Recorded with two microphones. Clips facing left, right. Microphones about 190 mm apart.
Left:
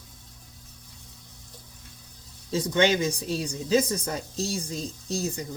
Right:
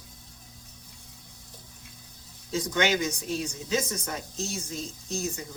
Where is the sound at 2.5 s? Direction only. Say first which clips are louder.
Left 3 dB; 30° left (ahead or behind).